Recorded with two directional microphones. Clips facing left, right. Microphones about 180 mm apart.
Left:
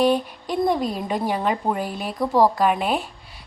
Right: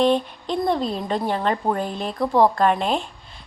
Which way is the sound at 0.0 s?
10° left (ahead or behind).